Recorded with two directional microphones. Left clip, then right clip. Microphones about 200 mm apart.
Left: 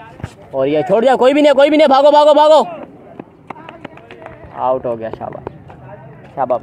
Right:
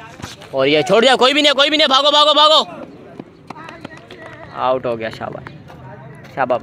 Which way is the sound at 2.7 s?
45° right (ahead or behind).